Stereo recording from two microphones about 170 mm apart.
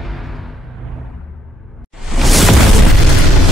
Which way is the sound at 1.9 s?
Centre (ahead or behind).